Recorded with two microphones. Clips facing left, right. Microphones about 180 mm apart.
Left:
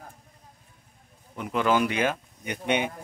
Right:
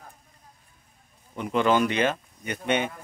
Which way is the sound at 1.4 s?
5° left (ahead or behind).